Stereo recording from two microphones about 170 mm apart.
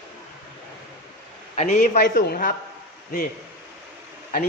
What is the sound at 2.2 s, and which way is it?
Speech, 60° left (ahead or behind).